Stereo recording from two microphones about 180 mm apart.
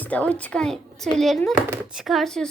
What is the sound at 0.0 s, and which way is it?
A woman's voice, 10° left (ahead or behind).